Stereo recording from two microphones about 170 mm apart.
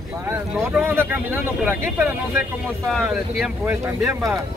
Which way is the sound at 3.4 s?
15° right (ahead or behind).